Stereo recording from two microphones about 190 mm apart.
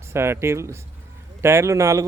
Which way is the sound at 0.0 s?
15° right (ahead or behind).